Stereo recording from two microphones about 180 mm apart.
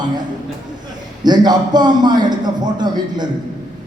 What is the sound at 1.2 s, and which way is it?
A man's voice, 25° right (ahead or behind).